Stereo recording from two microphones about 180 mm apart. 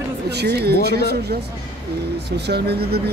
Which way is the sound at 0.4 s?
65° right (ahead or behind).